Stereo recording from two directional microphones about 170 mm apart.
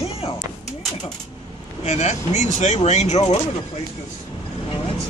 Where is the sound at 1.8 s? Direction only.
40° left (ahead or behind).